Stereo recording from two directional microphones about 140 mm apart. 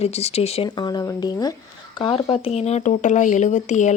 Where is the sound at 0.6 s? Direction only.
30° left (ahead or behind).